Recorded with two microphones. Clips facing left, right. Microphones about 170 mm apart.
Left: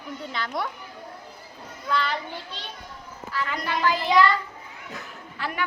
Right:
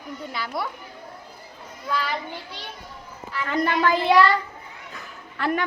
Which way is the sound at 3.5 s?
55° right (ahead or behind).